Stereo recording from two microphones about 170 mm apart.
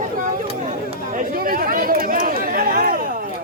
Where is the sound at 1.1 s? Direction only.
60° right (ahead or behind).